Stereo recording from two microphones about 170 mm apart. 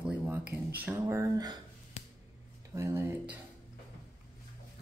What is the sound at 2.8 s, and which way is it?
Speech, 15° right (ahead or behind).